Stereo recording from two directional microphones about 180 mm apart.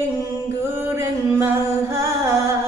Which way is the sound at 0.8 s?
15° right (ahead or behind).